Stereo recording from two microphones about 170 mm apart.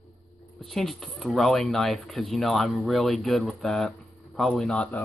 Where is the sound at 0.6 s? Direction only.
Centre (ahead or behind).